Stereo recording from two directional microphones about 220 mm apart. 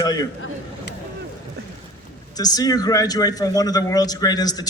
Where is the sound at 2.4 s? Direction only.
15° left (ahead or behind).